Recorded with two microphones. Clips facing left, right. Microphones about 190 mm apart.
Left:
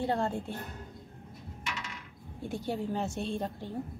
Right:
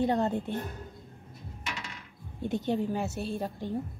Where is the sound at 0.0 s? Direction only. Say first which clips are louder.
Right 4 dB; 20° right (ahead or behind).